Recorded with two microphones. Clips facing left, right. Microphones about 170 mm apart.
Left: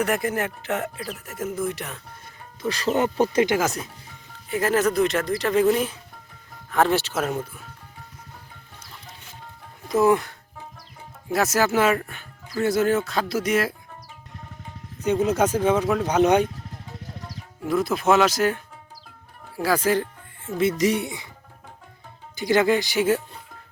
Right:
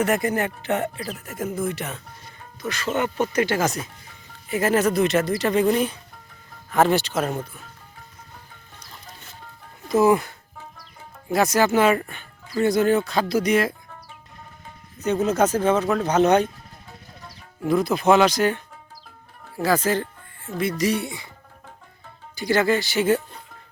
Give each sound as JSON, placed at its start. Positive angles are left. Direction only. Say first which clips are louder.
{"t": 0.0, "sound": "speech", "louder": "right 2 dB", "side_deg": 0}
{"t": 2.6, "sound": "speech", "louder": "left 2 dB", "side_deg": 35}
{"t": 3.6, "sound": "speech", "louder": "right 1 dB", "side_deg": 0}
{"t": 7.2, "sound": "speech", "louder": "right 1 dB", "side_deg": -10}
{"t": 9.9, "sound": "speech", "louder": "right 1 dB", "side_deg": 0}
{"t": 15.0, "sound": "speech", "louder": "even", "side_deg": 10}
{"t": 17.7, "sound": "speech", "louder": "right 2 dB", "side_deg": 0}
{"t": 20.6, "sound": "speech", "louder": "left 2 dB", "side_deg": 20}
{"t": 22.4, "sound": "speech", "louder": "left 1 dB", "side_deg": 20}